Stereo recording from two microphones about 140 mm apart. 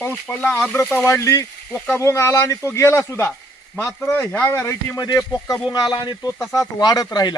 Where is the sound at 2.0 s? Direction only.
20° left (ahead or behind).